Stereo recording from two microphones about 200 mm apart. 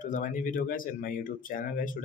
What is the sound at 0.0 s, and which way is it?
A man's voice, 40° left (ahead or behind).